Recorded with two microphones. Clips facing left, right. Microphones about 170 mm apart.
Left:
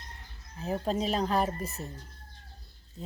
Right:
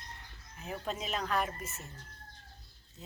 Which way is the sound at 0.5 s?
35° left (ahead or behind).